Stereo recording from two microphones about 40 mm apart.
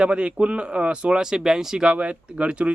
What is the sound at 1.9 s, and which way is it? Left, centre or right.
Speech, right.